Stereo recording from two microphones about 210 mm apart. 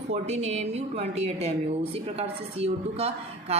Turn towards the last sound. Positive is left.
turn(degrees=-30)  # may be behind; listen again after turning